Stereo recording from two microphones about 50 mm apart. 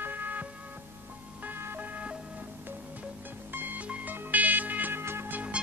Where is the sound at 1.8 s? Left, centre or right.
Right.